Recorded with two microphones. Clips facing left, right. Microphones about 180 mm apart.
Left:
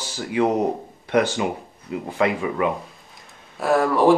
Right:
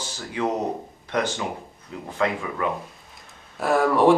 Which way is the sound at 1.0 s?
10° left (ahead or behind).